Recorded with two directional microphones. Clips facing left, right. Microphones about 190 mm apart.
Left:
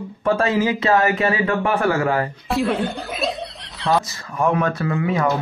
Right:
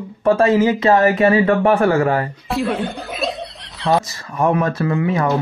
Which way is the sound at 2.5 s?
Centre (ahead or behind).